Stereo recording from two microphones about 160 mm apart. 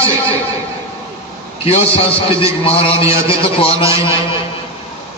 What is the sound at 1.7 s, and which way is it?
A man's voice, 35° left (ahead or behind).